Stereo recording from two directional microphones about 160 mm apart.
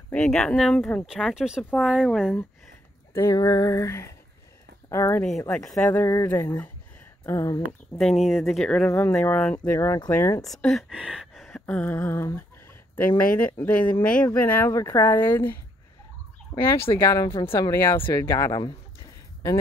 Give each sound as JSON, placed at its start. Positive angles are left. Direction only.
{"t": 0.1, "sound": "speech", "side_deg": 5}
{"t": 3.1, "sound": "speech", "side_deg": 20}
{"t": 5.5, "sound": "speech", "side_deg": 5}
{"t": 8.0, "sound": "speech", "side_deg": 0}
{"t": 10.4, "sound": "speech", "side_deg": 0}
{"t": 10.9, "sound": "a sound", "side_deg": -5}
{"t": 13.4, "sound": "speech", "side_deg": 10}
{"t": 16.9, "sound": "speech", "side_deg": 20}